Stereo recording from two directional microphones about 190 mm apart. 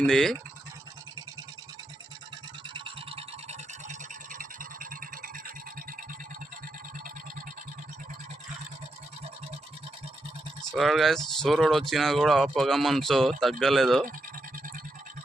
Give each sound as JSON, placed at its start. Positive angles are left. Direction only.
{"t": 0.0, "sound": "speech", "side_deg": 0}
{"t": 2.7, "sound": "toothbrush", "side_deg": -30}
{"t": 4.4, "sound": "a sound", "side_deg": -45}
{"t": 10.7, "sound": "speech", "side_deg": 0}